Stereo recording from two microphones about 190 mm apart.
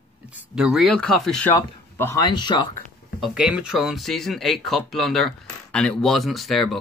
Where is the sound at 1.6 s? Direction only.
15° left (ahead or behind).